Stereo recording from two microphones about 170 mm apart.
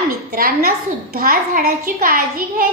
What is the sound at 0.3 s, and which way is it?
A child's voice, 60° right (ahead or behind).